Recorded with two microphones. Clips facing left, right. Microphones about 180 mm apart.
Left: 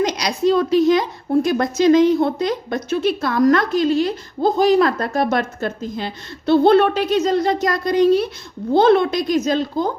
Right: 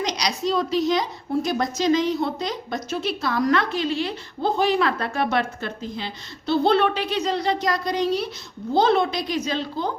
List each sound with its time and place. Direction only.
0.0 s a woman's voice: 50° left (ahead or behind)